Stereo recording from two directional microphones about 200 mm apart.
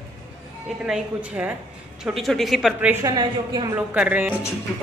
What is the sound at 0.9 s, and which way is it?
Speech, 5° right (ahead or behind).